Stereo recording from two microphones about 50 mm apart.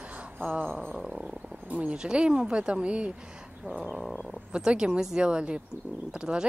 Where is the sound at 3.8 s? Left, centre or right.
Centre.